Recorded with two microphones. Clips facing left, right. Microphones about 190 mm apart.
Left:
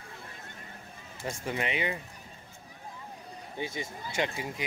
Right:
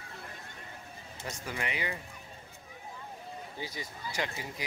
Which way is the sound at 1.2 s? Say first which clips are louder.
Left 5 dB; 25° left (ahead or behind).